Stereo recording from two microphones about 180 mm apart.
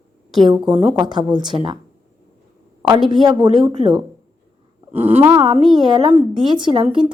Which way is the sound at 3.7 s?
30° right (ahead or behind).